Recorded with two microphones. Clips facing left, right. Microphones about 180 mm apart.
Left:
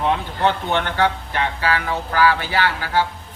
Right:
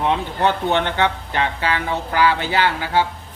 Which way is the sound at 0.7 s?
20° right (ahead or behind).